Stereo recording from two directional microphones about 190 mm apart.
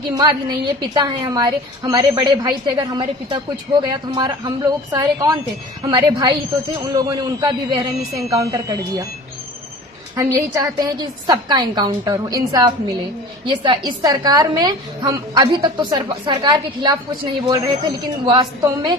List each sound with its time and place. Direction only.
0.1 s a woman's voice: 25° right (ahead or behind)
10.2 s a woman's voice: 15° right (ahead or behind)